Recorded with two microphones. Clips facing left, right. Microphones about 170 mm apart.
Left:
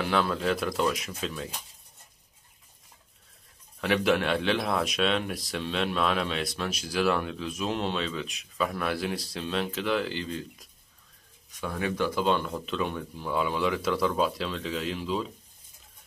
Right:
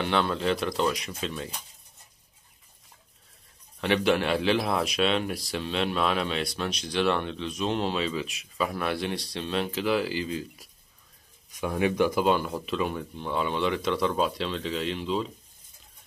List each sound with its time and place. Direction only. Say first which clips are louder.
0.0 s a man's voice: right 1 dB; centre (ahead or behind)
3.8 s a man's voice: right 1 dB; centre (ahead or behind)
11.5 s a man's voice: right 5 dB; 15° right (ahead or behind); by 15.2 s centre (ahead or behind)